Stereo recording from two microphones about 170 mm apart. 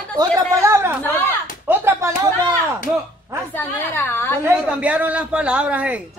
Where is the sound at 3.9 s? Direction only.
15° left (ahead or behind).